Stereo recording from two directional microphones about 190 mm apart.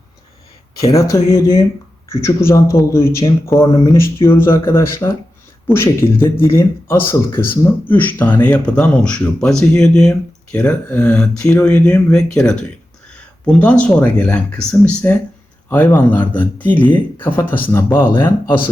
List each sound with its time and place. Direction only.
0.8 s speech: 15° left (ahead or behind)
16.3 s speech: 10° left (ahead or behind)